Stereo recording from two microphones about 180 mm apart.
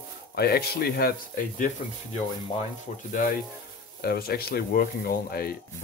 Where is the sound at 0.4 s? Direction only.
60° left (ahead or behind).